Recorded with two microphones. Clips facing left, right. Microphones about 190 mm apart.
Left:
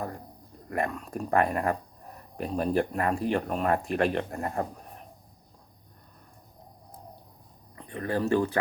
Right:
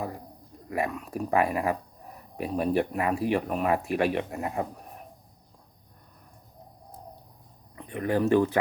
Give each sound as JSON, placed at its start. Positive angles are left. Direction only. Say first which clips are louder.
{"t": 0.7, "sound": "speech", "louder": "right 1 dB", "side_deg": -5}
{"t": 7.8, "sound": "speech", "louder": "right 3 dB", "side_deg": -15}